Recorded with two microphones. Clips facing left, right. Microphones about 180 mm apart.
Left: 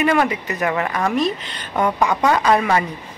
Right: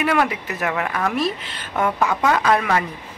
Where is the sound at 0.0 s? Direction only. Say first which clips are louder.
Left 2 dB; 5° right (ahead or behind).